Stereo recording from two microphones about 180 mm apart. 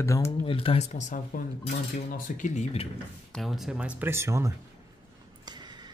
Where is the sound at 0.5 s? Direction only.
30° left (ahead or behind).